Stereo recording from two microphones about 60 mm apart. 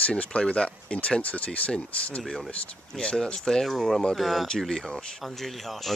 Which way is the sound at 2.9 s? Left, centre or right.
Centre.